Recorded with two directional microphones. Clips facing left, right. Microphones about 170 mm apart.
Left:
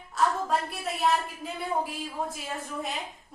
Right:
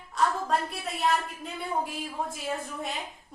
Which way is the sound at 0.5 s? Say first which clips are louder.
Even; centre (ahead or behind).